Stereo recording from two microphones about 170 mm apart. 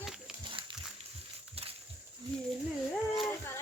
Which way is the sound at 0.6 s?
30° right (ahead or behind).